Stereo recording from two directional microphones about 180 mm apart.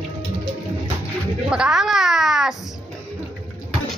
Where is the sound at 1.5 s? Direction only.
5° right (ahead or behind).